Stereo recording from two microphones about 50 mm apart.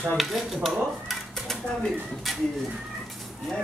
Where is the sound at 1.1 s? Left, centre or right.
Centre.